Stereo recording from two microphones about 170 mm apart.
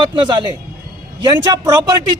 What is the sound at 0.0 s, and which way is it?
A man's voice, 25° right (ahead or behind).